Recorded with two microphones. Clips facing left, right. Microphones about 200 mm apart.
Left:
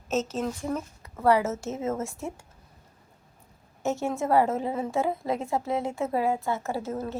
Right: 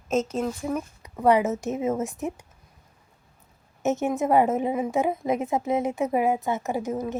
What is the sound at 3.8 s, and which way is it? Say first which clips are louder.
A woman's voice: right 4 dB; 20° right (ahead or behind).